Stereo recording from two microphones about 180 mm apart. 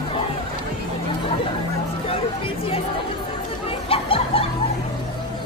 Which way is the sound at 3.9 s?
30° left (ahead or behind).